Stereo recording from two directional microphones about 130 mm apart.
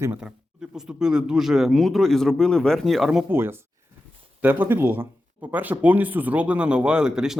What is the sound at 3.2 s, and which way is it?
Speech, 20° right (ahead or behind).